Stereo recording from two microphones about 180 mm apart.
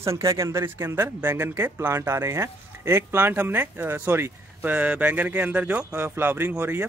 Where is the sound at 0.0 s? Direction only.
15° right (ahead or behind).